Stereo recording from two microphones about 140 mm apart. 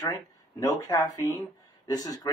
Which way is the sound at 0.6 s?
25° left (ahead or behind).